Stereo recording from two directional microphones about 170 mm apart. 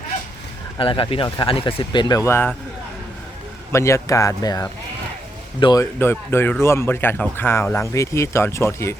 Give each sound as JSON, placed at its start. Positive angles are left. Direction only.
{"t": 0.8, "sound": "speech", "side_deg": 30}
{"t": 3.7, "sound": "speech", "side_deg": 15}
{"t": 5.8, "sound": "speech", "side_deg": 15}